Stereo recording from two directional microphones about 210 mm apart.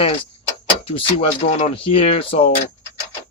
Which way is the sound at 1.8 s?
25° left (ahead or behind).